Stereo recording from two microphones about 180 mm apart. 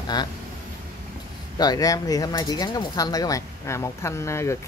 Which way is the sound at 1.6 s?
20° left (ahead or behind).